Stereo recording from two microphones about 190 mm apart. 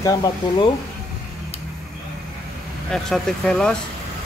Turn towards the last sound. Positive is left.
turn(degrees=5)  # may be behind; listen again after turning